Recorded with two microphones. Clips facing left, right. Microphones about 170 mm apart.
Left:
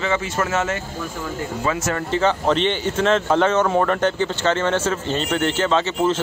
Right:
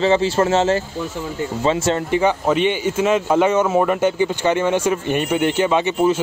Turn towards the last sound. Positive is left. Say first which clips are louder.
# right 2 dB
turn(degrees=-15)  # may be behind; listen again after turning